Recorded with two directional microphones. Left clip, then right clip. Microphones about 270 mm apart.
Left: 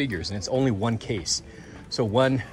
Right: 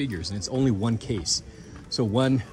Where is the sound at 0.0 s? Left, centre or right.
Centre.